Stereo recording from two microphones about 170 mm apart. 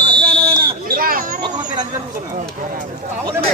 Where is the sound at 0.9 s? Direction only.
55° right (ahead or behind).